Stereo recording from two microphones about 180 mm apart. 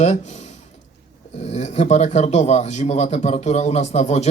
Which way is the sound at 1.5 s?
40° left (ahead or behind).